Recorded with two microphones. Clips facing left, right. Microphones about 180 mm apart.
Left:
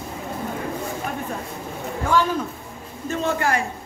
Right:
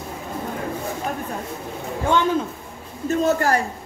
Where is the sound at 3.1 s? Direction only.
40° right (ahead or behind).